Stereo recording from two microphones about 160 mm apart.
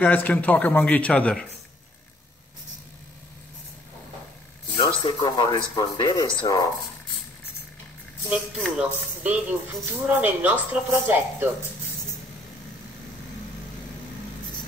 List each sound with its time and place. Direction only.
0.0 s speech: 10° left (ahead or behind)
4.7 s speech: 25° left (ahead or behind)
8.3 s speech: 5° right (ahead or behind)